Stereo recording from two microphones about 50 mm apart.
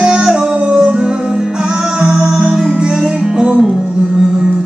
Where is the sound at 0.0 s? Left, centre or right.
Centre.